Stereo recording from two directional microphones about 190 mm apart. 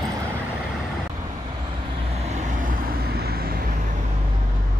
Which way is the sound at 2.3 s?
40° right (ahead or behind).